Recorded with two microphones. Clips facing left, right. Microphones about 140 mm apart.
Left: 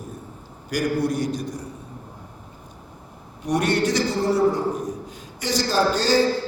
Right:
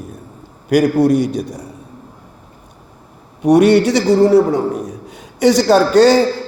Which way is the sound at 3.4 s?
70° right (ahead or behind).